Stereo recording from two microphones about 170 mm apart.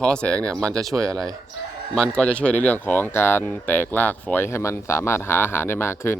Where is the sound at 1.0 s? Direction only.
20° right (ahead or behind).